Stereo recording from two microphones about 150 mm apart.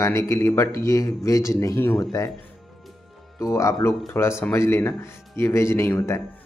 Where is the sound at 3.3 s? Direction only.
20° left (ahead or behind).